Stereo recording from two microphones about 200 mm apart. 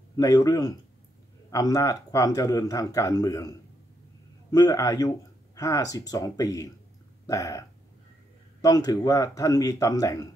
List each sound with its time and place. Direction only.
0.1 s speech: 15° left (ahead or behind)